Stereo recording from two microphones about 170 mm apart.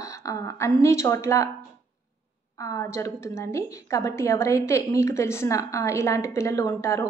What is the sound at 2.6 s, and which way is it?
A woman's voice, 15° left (ahead or behind).